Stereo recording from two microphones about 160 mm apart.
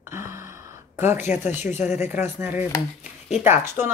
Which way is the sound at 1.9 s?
15° right (ahead or behind).